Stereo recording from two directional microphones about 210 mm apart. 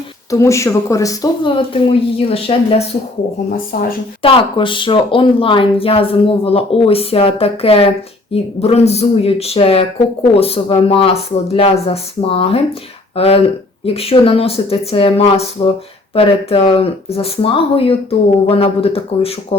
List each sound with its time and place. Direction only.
0.3 s speech: 15° left (ahead or behind)
4.2 s speech: 25° left (ahead or behind)